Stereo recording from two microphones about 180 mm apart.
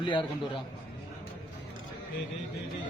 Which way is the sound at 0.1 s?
25° left (ahead or behind).